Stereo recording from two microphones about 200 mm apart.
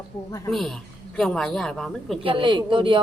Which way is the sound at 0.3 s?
15° left (ahead or behind).